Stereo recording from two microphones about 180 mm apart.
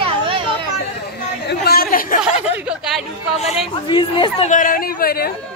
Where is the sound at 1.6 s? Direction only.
55° left (ahead or behind).